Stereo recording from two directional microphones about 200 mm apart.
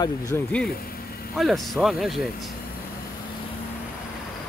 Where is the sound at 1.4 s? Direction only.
Centre (ahead or behind).